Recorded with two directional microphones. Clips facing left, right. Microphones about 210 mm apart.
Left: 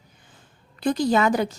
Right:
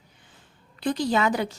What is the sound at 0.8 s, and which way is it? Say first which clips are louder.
Speech: left 3 dB; 45° left (ahead or behind).